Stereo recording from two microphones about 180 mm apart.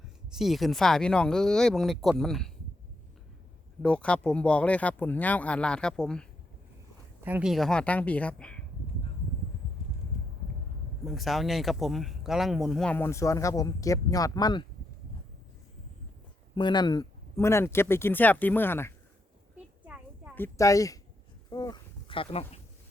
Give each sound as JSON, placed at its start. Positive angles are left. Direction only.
{"t": 0.3, "sound": "speech", "side_deg": 0}
{"t": 3.8, "sound": "speech", "side_deg": 5}
{"t": 7.2, "sound": "speech", "side_deg": -10}
{"t": 11.0, "sound": "speech", "side_deg": 0}
{"t": 16.6, "sound": "speech", "side_deg": 25}
{"t": 19.8, "sound": "a sound", "side_deg": -5}
{"t": 20.3, "sound": "speech", "side_deg": 15}
{"t": 21.5, "sound": "a sound", "side_deg": 20}